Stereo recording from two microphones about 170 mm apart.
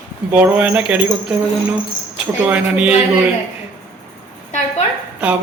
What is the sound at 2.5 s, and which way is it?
Speech, 5° right (ahead or behind).